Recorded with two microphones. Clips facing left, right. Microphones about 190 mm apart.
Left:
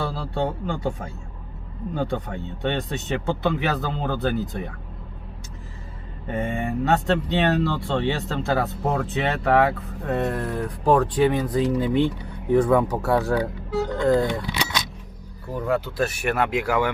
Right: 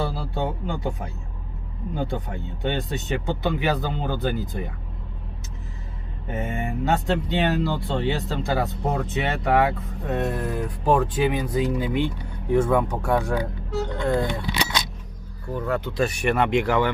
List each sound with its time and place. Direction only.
0.0 s speech: 5° right (ahead or behind)
6.2 s speech: centre (ahead or behind)
11.6 s speech: 30° left (ahead or behind)
12.5 s speech: centre (ahead or behind)
15.5 s speech: 5° left (ahead or behind)